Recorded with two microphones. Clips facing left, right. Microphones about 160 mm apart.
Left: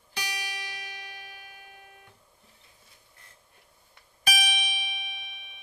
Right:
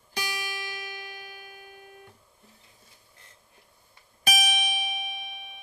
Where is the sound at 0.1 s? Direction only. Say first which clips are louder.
Right 3 dB; 40° right (ahead or behind).